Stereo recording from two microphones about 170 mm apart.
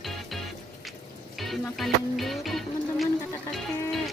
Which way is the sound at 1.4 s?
Centre (ahead or behind).